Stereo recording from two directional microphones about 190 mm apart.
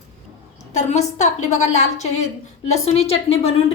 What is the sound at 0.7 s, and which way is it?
A woman's voice, 35° left (ahead or behind).